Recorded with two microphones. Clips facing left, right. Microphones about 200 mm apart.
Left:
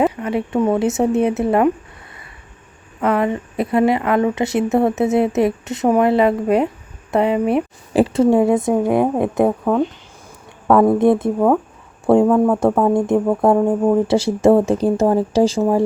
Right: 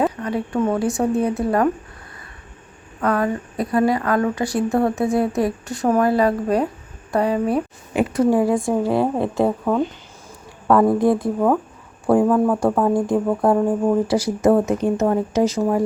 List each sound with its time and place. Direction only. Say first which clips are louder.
0.0 s a woman's voice: left 3 dB; 20° left (ahead or behind)
3.0 s a woman's voice: left 2 dB; 25° left (ahead or behind)
10.9 s a woman's voice: left 3 dB; 25° left (ahead or behind)
12.1 s a woman's voice: left 3 dB; 25° left (ahead or behind)